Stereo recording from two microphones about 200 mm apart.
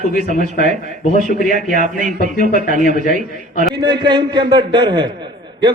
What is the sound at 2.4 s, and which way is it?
Speech, 40° left (ahead or behind).